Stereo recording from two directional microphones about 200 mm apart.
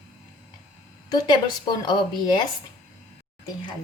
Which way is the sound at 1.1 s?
20° left (ahead or behind).